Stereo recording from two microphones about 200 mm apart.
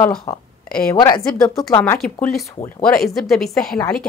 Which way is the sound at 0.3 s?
10° left (ahead or behind).